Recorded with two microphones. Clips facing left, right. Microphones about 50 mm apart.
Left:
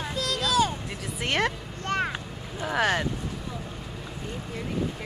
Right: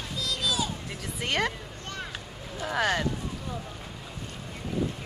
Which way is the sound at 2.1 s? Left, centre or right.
Centre.